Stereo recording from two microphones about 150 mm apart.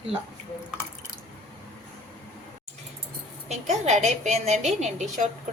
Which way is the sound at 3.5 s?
50° right (ahead or behind).